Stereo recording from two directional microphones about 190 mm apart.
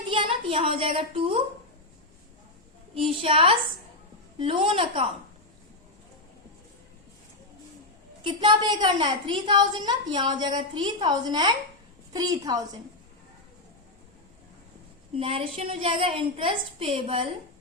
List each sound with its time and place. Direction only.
0.1 s a woman's voice: 30° right (ahead or behind)
2.9 s a woman's voice: 30° right (ahead or behind)
8.2 s a woman's voice: 25° right (ahead or behind)
15.1 s a woman's voice: 30° right (ahead or behind)